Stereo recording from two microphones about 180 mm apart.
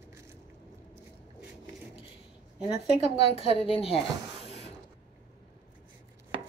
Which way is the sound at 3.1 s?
30° left (ahead or behind).